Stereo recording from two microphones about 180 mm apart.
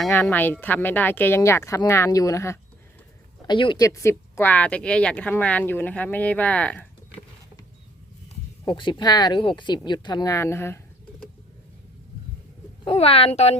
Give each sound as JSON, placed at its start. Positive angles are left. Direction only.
{"t": 0.1, "sound": "speech", "side_deg": 10}
{"t": 8.6, "sound": "speech", "side_deg": 25}
{"t": 12.8, "sound": "a woman's voice", "side_deg": 30}